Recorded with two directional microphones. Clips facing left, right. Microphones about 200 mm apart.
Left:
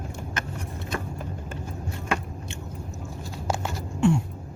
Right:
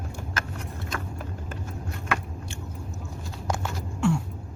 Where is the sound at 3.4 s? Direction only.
15° left (ahead or behind).